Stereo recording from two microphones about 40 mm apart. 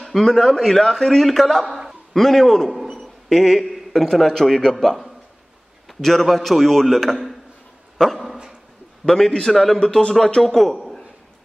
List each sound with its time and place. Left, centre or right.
0.0 s a man's voice: centre
1.2 s a man's voice: centre
2.7 s a sound: centre
3.3 s a man's voice: centre
9.8 s speech: centre
10.4 s a man's voice: centre